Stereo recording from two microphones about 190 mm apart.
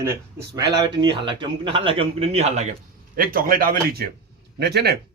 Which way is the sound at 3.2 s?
50° right (ahead or behind).